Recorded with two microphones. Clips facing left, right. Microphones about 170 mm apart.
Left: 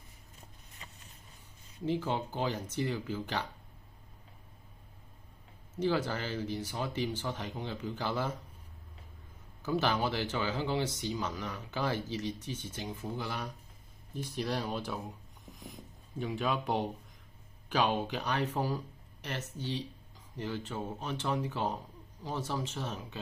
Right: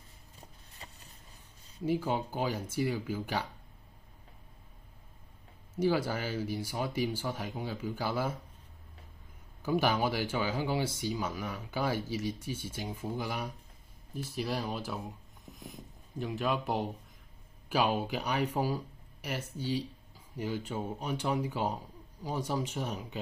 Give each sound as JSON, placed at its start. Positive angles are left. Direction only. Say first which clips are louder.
{"t": 0.4, "sound": "a sound", "louder": "right 2 dB", "side_deg": -35}
{"t": 1.9, "sound": "speech", "louder": "right 2 dB", "side_deg": -10}
{"t": 5.8, "sound": "speech", "louder": "right 2 dB", "side_deg": -10}
{"t": 9.6, "sound": "speech", "louder": "right 2 dB", "side_deg": -10}